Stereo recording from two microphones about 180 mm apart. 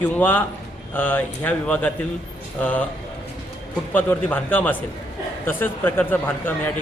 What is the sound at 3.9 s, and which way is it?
A man's voice, 10° left (ahead or behind).